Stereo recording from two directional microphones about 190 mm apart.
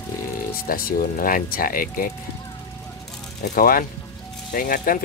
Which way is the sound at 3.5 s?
50° left (ahead or behind).